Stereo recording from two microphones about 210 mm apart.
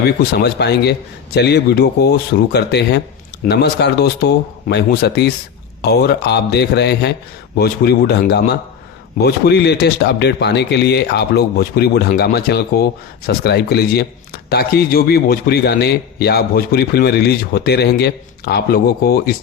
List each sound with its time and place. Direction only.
0.0 s a man's voice: 50° left (ahead or behind)